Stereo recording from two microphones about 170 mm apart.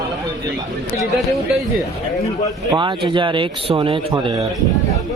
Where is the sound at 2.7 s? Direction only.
30° right (ahead or behind).